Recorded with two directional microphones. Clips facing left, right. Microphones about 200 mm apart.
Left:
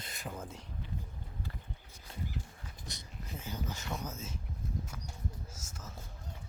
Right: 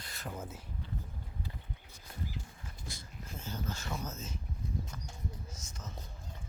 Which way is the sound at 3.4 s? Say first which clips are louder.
Right 1 dB; 15° left (ahead or behind).